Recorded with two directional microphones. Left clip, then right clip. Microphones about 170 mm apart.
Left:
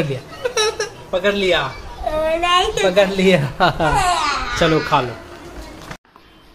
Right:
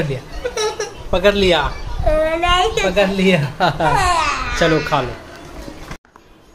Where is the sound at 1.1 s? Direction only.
35° right (ahead or behind).